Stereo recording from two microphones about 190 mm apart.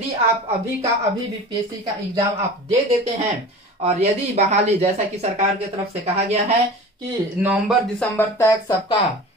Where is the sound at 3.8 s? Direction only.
35° right (ahead or behind).